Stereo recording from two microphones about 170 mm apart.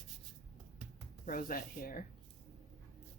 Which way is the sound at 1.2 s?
55° left (ahead or behind).